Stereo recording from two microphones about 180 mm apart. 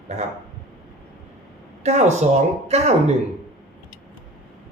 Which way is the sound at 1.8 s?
35° right (ahead or behind).